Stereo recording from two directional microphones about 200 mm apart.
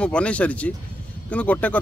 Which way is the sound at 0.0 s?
5° left (ahead or behind).